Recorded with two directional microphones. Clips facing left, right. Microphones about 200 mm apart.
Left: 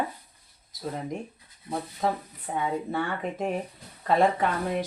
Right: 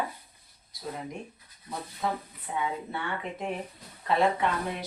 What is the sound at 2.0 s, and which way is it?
Speech, 40° left (ahead or behind).